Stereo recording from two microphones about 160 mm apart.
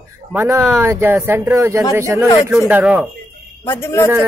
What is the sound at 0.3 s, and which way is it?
Speech, 10° right (ahead or behind).